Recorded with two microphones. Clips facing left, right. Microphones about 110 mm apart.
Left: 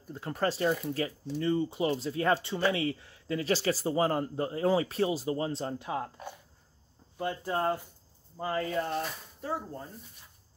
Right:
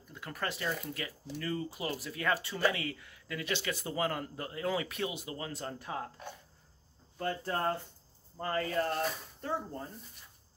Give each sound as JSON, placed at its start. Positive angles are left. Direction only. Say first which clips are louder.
{"t": 0.0, "sound": "speech", "louder": "left 8 dB", "side_deg": 35}
{"t": 7.2, "sound": "speech", "louder": "left 3 dB", "side_deg": 15}